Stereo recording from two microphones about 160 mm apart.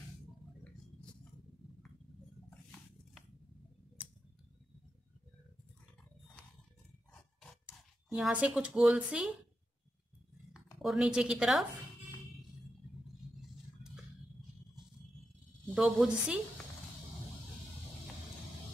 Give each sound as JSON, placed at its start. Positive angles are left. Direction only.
{"t": 8.1, "sound": "a woman's voice", "side_deg": -5}
{"t": 10.5, "sound": "a woman's voice", "side_deg": 0}
{"t": 15.7, "sound": "a woman's voice", "side_deg": -5}